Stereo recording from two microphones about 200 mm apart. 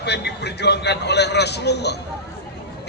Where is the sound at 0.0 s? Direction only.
55° left (ahead or behind).